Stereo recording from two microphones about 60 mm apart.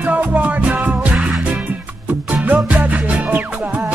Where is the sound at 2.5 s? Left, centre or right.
Right.